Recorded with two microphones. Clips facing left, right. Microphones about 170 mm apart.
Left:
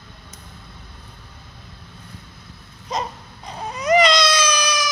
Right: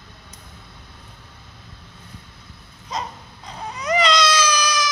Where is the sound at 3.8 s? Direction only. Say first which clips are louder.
Left 3 dB; 20° left (ahead or behind).